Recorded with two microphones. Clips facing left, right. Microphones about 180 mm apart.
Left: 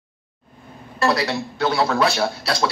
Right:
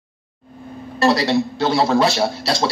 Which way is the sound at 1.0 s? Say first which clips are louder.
Right 4 dB; 25° right (ahead or behind).